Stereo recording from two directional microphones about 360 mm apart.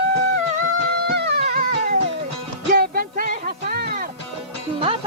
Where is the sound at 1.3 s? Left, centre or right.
Right.